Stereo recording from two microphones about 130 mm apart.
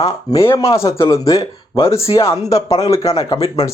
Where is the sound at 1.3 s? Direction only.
50° left (ahead or behind).